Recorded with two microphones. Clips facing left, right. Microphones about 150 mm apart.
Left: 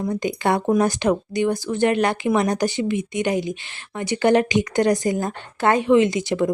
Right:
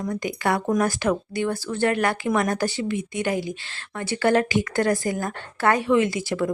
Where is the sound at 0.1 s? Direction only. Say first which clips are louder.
Left 2 dB; 25° left (ahead or behind).